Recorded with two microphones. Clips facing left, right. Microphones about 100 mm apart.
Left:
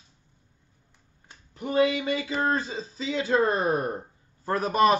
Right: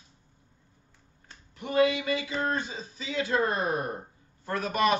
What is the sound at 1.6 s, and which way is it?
A man's voice, 30° left (ahead or behind).